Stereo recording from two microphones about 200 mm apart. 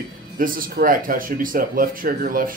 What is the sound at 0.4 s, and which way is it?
Speech, 45° right (ahead or behind).